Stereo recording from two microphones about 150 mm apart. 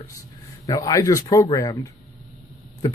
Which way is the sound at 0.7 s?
20° left (ahead or behind).